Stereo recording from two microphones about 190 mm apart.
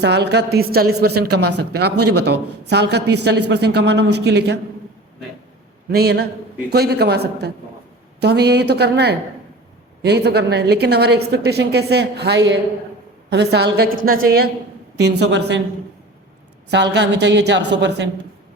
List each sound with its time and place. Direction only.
0.0 s a woman's voice: 60° right (ahead or behind)
5.9 s a woman's voice: 55° right (ahead or behind)
16.6 s a woman's voice: 65° right (ahead or behind)